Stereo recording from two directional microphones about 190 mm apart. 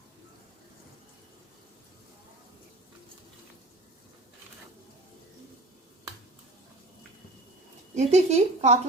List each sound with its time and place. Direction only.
7.9 s speech: 35° right (ahead or behind)